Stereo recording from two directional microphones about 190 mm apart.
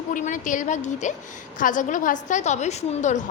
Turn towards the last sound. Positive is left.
turn(degrees=35)  # may be behind; listen again after turning